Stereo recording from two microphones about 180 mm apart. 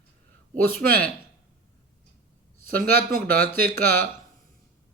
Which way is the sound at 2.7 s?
55° right (ahead or behind).